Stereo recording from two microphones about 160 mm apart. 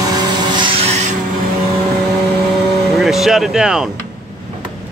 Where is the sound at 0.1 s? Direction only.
30° right (ahead or behind).